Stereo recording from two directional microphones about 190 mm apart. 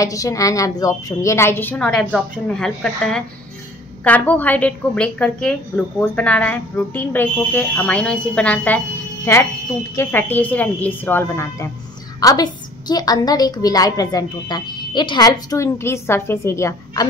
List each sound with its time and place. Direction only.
0.0 s a woman's voice: 15° left (ahead or behind)